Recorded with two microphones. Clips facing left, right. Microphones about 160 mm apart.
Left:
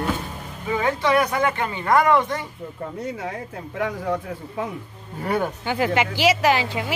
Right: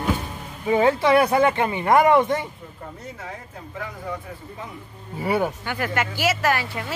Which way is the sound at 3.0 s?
70° left (ahead or behind).